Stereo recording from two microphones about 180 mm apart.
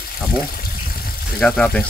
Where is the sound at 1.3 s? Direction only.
5° left (ahead or behind).